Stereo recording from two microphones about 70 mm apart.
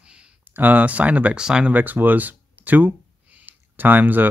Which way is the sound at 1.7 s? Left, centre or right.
Right.